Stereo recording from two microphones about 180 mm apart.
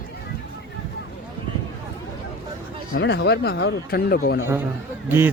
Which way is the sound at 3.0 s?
80° left.